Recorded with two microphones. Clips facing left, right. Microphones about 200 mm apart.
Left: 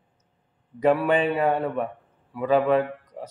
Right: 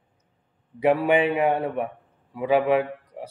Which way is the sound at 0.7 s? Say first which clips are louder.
Right 1 dB; 15° right (ahead or behind).